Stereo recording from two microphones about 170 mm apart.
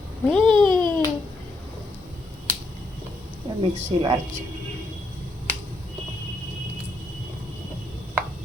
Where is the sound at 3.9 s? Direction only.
30° right (ahead or behind).